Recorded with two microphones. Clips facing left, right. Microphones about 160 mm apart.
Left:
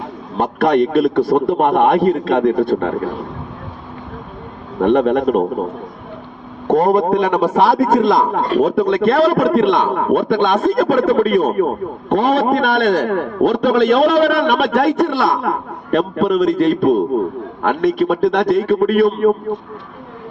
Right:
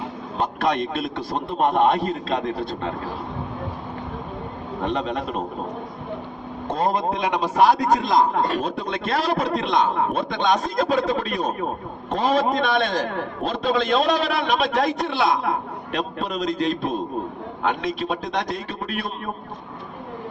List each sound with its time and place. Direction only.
0.3 s a man's voice: 55° left (ahead or behind)
4.8 s a man's voice: 55° left (ahead or behind)
6.7 s a man's voice: 55° left (ahead or behind)